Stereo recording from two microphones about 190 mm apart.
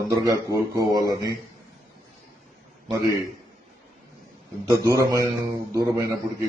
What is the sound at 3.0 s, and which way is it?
Speech, 20° left (ahead or behind).